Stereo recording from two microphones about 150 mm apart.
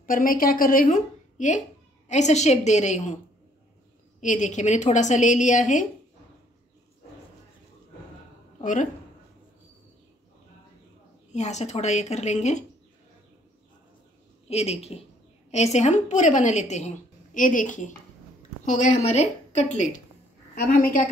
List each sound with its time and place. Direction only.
0.0 s a woman's voice: 65° left (ahead or behind); by 3.2 s 50° left (ahead or behind)
4.2 s a woman's voice: 55° left (ahead or behind)
8.5 s a woman's voice: 55° left (ahead or behind)
11.3 s a woman's voice: 50° left (ahead or behind)
14.5 s a woman's voice: 45° left (ahead or behind)
20.5 s a woman's voice: 80° left